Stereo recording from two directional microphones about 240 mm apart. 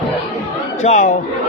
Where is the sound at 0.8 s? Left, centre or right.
Left.